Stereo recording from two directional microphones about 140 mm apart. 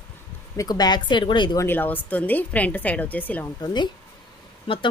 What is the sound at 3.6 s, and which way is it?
Speech, 30° left (ahead or behind).